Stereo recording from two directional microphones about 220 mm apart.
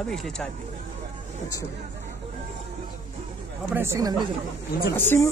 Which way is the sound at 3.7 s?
15° right (ahead or behind).